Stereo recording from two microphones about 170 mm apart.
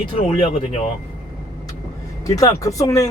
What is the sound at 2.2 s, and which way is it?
Speech, 20° left (ahead or behind).